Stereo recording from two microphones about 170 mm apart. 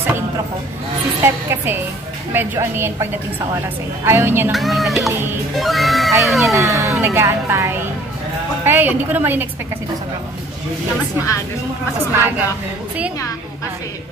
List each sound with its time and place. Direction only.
1.2 s a woman's voice: 15° right (ahead or behind)
4.5 s speech: centre (ahead or behind)
6.6 s a woman's voice: 20° right (ahead or behind)
11.2 s a woman's voice: 15° right (ahead or behind)